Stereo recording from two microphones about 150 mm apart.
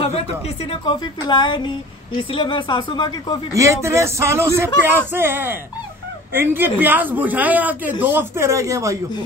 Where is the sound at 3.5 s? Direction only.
20° right (ahead or behind).